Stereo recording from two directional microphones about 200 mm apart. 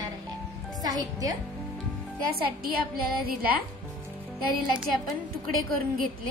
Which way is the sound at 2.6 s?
50° right (ahead or behind).